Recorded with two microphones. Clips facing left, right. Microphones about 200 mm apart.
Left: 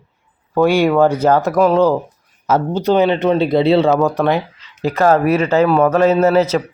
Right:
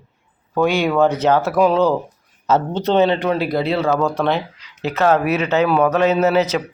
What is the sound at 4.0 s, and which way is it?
Speech, 15° left (ahead or behind).